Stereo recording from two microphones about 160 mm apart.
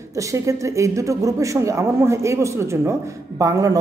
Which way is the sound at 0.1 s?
20° right (ahead or behind).